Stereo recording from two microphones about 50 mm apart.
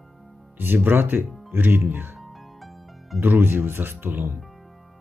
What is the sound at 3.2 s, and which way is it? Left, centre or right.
Speech, right.